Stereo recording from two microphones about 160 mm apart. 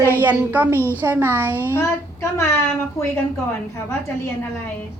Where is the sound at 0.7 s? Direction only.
15° left (ahead or behind).